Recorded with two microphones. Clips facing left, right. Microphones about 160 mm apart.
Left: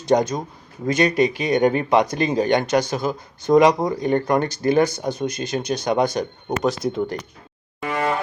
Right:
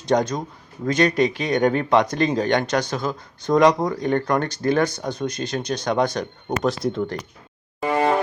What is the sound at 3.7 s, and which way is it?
Speech, 25° left (ahead or behind).